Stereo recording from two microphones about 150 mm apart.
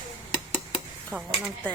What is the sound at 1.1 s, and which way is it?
Speech, 15° right (ahead or behind).